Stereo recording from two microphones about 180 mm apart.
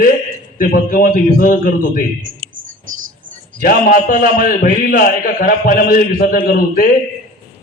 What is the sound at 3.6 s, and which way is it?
A man's voice, 55° left (ahead or behind).